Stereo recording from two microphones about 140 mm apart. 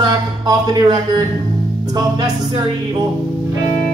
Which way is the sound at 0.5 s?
30° right (ahead or behind).